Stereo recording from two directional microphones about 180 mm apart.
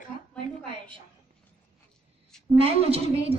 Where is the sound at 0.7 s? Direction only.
30° right (ahead or behind).